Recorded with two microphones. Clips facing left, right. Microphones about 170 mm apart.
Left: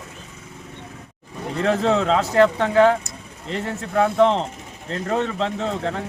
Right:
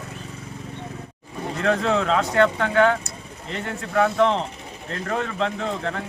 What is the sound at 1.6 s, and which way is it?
Speech, 30° left (ahead or behind).